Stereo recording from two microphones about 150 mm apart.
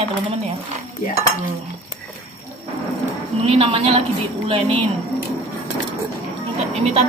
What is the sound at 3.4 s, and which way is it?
Speech, 40° right (ahead or behind).